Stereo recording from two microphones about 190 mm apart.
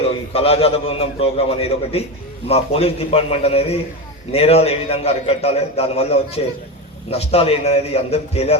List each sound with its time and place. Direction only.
0.3 s a man's voice: 30° left (ahead or behind)